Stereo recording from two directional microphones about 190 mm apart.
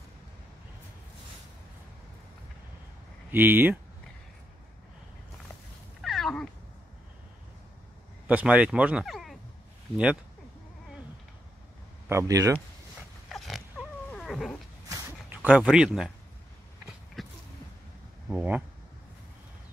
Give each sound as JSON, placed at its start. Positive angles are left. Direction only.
{"t": 3.3, "sound": "speech", "side_deg": -10}
{"t": 5.9, "sound": "a sound", "side_deg": 0}
{"t": 8.3, "sound": "speech", "side_deg": -5}
{"t": 12.1, "sound": "speech", "side_deg": -15}
{"t": 14.1, "sound": "cat", "side_deg": 0}
{"t": 14.9, "sound": "a sound", "side_deg": -15}
{"t": 15.1, "sound": "speech", "side_deg": -5}
{"t": 16.8, "sound": "a sound", "side_deg": 0}
{"t": 18.3, "sound": "speech", "side_deg": -5}